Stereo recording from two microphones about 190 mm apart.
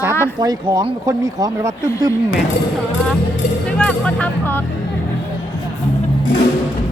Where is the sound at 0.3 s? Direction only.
20° right (ahead or behind).